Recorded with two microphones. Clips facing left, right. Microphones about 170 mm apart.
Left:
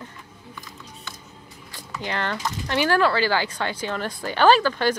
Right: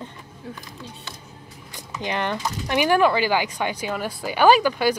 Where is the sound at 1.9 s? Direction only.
15° right (ahead or behind).